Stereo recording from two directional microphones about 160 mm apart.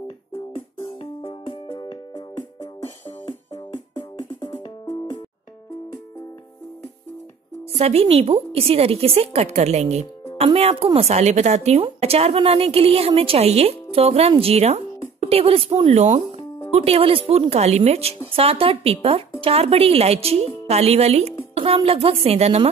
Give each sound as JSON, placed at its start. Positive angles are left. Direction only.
{"t": 1.2, "sound": "music", "side_deg": 30}
{"t": 7.7, "sound": "a woman's voice", "side_deg": -40}